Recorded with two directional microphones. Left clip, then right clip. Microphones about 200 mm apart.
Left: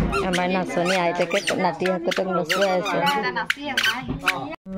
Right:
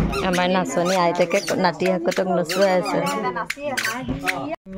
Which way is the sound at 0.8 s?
10° right (ahead or behind).